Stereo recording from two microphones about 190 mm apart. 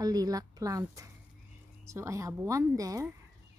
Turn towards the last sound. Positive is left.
turn(degrees=-15)  # may be behind; listen again after turning